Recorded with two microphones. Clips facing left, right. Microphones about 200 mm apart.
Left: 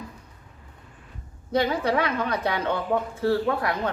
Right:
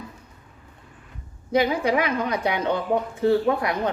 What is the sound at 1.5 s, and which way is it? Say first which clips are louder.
Speech: right 2 dB; 10° right (ahead or behind).